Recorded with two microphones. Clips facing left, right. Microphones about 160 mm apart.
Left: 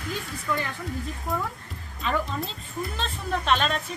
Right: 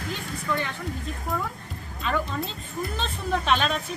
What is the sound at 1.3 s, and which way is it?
Speech, centre (ahead or behind).